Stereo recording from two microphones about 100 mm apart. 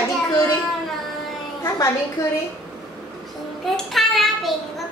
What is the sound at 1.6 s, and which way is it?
Speech, 30° left (ahead or behind).